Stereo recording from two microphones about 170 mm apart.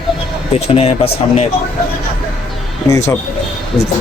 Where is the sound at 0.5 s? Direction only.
35° left (ahead or behind).